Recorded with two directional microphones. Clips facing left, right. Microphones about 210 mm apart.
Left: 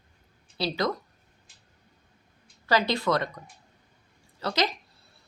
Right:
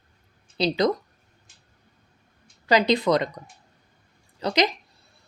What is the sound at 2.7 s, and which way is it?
Speech, 15° right (ahead or behind).